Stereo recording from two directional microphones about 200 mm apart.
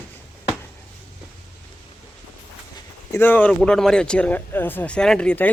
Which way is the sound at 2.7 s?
10° left (ahead or behind).